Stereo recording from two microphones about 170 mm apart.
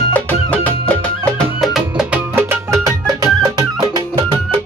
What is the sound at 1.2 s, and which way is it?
Music, centre (ahead or behind).